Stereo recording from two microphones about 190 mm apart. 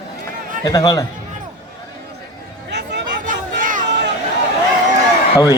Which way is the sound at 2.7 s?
65° right (ahead or behind).